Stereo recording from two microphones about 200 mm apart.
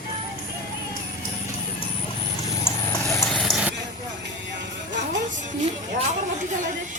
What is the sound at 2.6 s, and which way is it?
Horse, 15° left (ahead or behind).